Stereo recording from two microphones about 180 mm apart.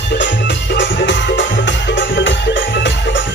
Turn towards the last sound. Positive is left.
turn(degrees=85)